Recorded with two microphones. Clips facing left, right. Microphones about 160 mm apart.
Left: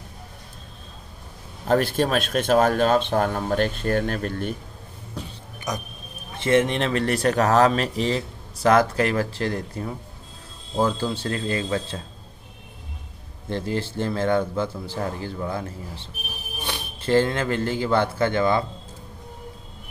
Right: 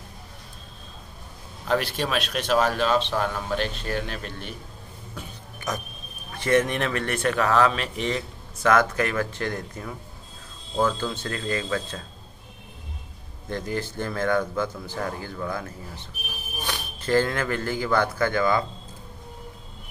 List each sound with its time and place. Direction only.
1.7 s a man's voice: 50° left (ahead or behind)
5.2 s music: 35° left (ahead or behind)
5.7 s a man's voice: 20° left (ahead or behind)
13.5 s a man's voice: 30° left (ahead or behind)